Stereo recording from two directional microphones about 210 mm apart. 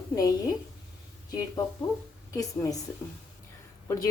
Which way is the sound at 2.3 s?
15° left (ahead or behind).